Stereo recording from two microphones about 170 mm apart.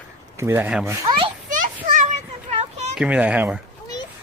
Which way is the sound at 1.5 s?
50° right (ahead or behind).